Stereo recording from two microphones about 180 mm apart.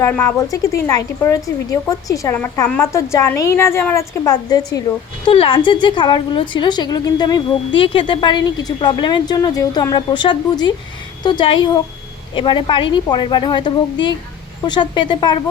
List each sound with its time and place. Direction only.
0.0 s a woman's voice: 15° left (ahead or behind)